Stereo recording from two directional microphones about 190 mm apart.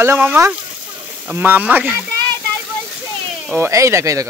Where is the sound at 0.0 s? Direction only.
10° right (ahead or behind).